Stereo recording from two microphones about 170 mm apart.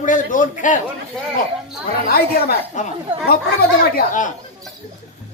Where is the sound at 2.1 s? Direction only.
65° left (ahead or behind).